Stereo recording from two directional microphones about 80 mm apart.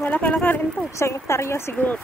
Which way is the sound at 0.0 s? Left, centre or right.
Left.